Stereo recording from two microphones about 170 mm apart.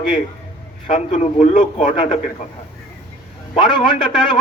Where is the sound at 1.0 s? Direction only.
45° left (ahead or behind).